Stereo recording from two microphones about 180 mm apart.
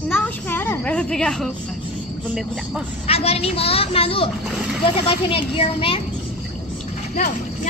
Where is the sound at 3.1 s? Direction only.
35° left (ahead or behind).